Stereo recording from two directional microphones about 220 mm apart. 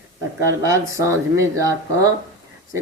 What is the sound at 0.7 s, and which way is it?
Speech, 15° right (ahead or behind).